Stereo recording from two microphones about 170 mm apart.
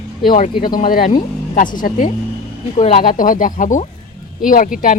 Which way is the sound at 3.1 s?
50° left (ahead or behind).